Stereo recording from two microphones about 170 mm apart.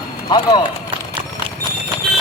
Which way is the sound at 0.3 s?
25° left (ahead or behind).